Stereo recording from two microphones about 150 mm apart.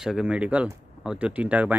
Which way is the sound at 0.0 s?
5° right (ahead or behind).